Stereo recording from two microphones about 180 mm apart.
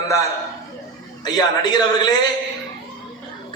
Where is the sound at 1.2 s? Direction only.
25° left (ahead or behind).